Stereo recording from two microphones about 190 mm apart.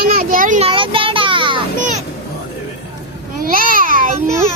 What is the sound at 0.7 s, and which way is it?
Child singing, 25° right (ahead or behind).